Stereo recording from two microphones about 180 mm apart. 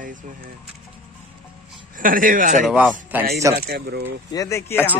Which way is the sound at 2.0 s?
50° right (ahead or behind).